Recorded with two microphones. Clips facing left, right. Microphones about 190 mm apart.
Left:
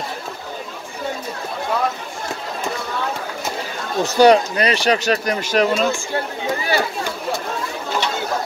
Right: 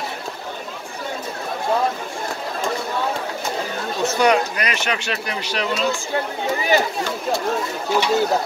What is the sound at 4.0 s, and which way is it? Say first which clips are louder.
Speech: left 5 dB; 35° left (ahead or behind).